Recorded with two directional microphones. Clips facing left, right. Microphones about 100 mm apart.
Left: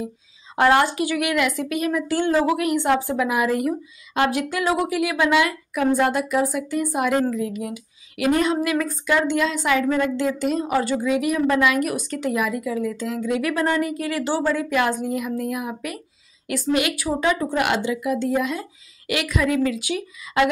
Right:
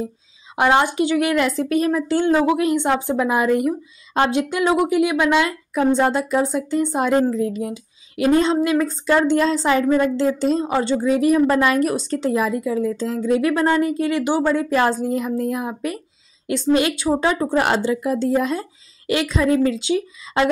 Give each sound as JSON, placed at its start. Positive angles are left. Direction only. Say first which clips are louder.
{"t": 0.6, "sound": "a woman's voice", "louder": "right 1 dB", "side_deg": -20}